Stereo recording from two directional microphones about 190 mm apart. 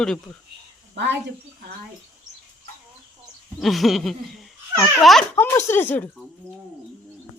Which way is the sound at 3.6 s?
Centre (ahead or behind).